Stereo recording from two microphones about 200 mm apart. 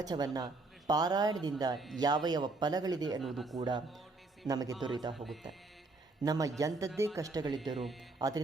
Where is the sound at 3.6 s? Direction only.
20° right (ahead or behind).